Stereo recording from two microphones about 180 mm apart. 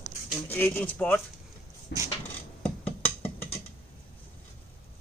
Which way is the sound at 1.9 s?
70° left (ahead or behind).